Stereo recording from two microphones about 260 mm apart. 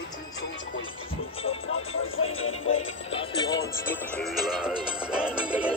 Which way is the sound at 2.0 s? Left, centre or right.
Left.